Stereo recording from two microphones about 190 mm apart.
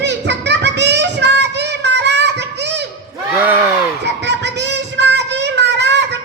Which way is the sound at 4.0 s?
65° right (ahead or behind).